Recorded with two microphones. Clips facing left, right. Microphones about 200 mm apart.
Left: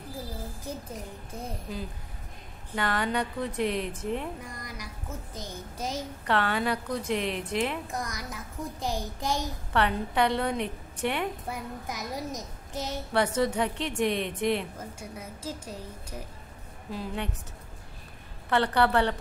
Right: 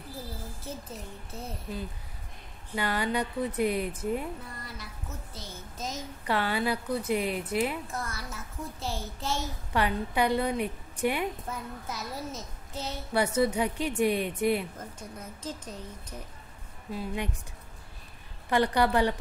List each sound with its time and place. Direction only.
0.7 s a child's voice: 10° left (ahead or behind)
2.7 s a woman's voice: 10° right (ahead or behind)
4.4 s a child's voice: 15° left (ahead or behind)
6.2 s a woman's voice: 10° right (ahead or behind)
7.9 s a child's voice: 15° left (ahead or behind)
9.7 s a woman's voice: 10° right (ahead or behind)
11.4 s a child's voice: 15° left (ahead or behind)
13.1 s a woman's voice: 10° right (ahead or behind)
14.8 s a child's voice: 10° left (ahead or behind)
16.9 s a woman's voice: 10° right (ahead or behind)
18.5 s a woman's voice: 10° right (ahead or behind)